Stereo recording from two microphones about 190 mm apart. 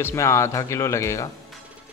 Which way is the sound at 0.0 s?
15° left (ahead or behind).